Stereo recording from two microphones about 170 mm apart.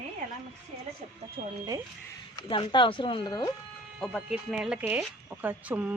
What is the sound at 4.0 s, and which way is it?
Speech, centre (ahead or behind).